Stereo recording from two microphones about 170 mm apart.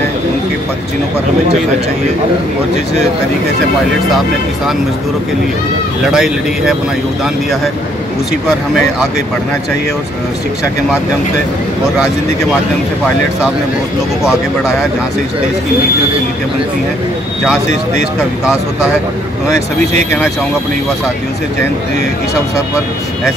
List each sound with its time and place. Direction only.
6.1 s speech: 5° right (ahead or behind)
14.2 s speech: centre (ahead or behind)